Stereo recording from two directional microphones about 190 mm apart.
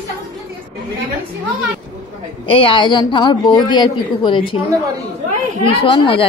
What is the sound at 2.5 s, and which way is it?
A woman's voice, 25° left (ahead or behind).